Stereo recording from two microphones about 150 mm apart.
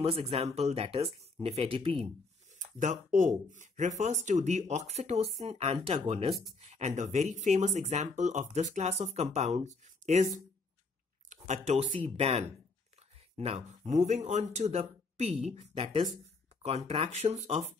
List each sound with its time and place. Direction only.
0.0 s speech: 40° right (ahead or behind)
2.6 s speech: 60° right (ahead or behind)
11.4 s speech: 50° right (ahead or behind)